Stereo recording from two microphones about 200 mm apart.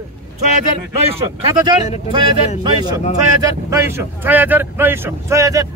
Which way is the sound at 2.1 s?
25° right (ahead or behind).